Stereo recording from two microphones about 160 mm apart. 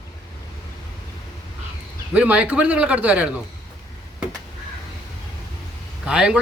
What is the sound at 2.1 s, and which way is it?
A man's voice, 10° right (ahead or behind).